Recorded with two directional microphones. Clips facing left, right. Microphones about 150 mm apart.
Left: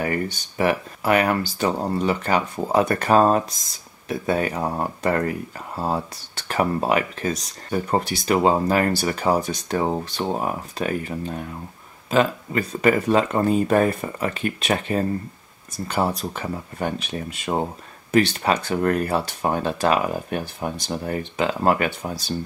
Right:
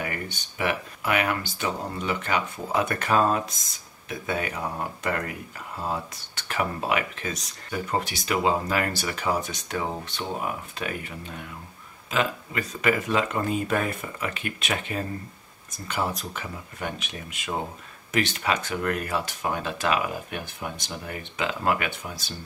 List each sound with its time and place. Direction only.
0.0 s speech: 35° left (ahead or behind)